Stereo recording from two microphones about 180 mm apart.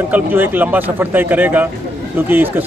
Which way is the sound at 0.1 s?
10° right (ahead or behind).